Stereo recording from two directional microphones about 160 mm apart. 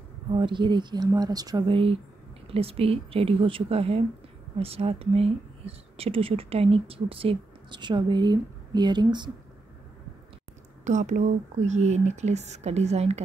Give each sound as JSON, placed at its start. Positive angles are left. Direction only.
{"t": 0.3, "sound": "speech", "side_deg": -30}
{"t": 2.4, "sound": "speech", "side_deg": -35}
{"t": 10.8, "sound": "speech", "side_deg": -50}